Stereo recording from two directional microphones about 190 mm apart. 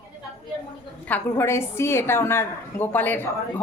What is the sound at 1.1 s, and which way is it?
A woman's voice, 15° left (ahead or behind).